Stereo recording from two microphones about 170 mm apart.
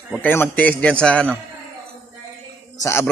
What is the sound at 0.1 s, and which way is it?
Speech, 10° left (ahead or behind).